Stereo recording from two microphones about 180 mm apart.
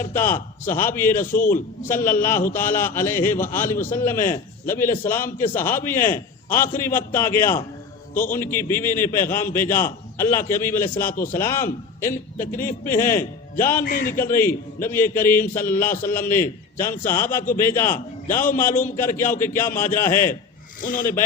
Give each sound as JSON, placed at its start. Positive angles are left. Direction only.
{"t": 0.0, "sound": "a man's voice", "side_deg": 10}
{"t": 13.8, "sound": "speech", "side_deg": 50}
{"t": 14.1, "sound": "a man's voice", "side_deg": 15}
{"t": 20.8, "sound": "speech", "side_deg": 50}